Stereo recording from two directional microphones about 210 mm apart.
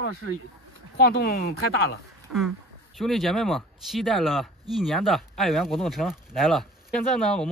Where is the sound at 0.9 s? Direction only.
50° left (ahead or behind).